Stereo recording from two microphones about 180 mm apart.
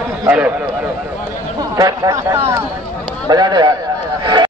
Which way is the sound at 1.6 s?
20° right (ahead or behind).